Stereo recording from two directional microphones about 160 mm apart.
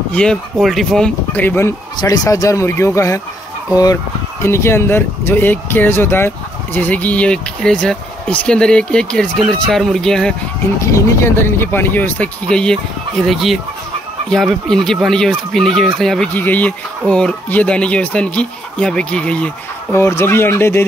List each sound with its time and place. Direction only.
0.1 s speech: 5° left (ahead or behind)
10.9 s speech: 15° left (ahead or behind)